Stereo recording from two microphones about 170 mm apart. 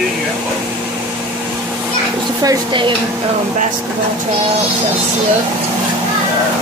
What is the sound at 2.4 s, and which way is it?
Speech, 25° right (ahead or behind).